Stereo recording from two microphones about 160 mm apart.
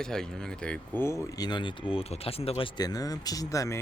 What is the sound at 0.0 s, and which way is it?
Speech, 5° left (ahead or behind).